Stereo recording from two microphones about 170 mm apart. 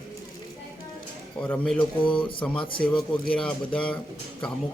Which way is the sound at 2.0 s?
30° left (ahead or behind).